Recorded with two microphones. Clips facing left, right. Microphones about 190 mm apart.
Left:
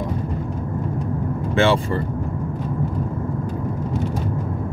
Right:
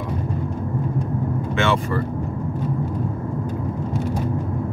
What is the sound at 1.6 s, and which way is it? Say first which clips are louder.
Speech: left 4 dB; 30° left (ahead or behind).